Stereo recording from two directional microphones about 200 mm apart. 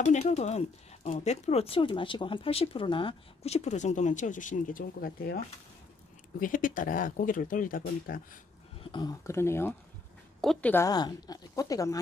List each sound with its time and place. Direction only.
0.0 s speech: 35° left (ahead or behind)
6.4 s speech: 45° left (ahead or behind)
8.9 s speech: 20° left (ahead or behind)